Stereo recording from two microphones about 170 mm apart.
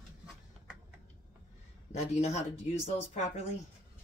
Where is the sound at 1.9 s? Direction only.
40° left (ahead or behind).